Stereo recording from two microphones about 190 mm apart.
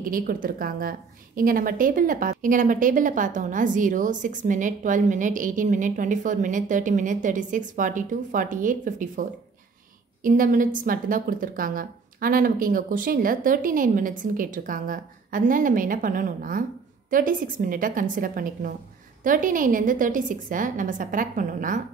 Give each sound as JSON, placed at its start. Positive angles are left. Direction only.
{"t": 0.1, "sound": "a woman's voice", "side_deg": -50}